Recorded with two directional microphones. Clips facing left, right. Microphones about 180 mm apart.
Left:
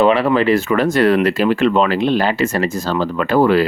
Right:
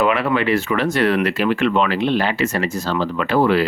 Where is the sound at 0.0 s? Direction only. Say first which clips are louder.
Left 5 dB; 30° left (ahead or behind).